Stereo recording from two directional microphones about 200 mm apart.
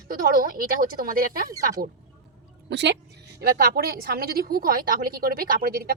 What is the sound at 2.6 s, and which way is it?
A woman's voice, 60° right (ahead or behind).